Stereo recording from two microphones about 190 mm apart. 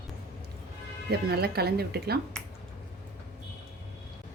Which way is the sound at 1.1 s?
60° right (ahead or behind).